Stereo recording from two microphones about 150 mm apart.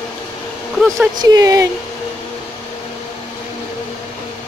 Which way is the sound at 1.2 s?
25° right (ahead or behind).